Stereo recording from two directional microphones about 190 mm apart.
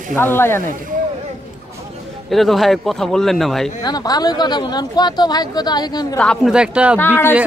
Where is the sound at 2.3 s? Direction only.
Centre (ahead or behind).